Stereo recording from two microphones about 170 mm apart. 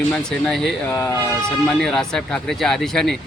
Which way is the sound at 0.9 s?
20° left (ahead or behind).